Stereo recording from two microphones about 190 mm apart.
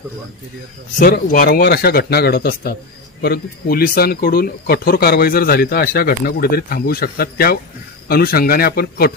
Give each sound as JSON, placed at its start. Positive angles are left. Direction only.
{"t": 0.9, "sound": "speech", "side_deg": 50}